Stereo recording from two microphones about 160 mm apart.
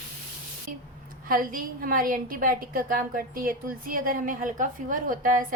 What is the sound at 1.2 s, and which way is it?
A woman's voice, 60° right (ahead or behind).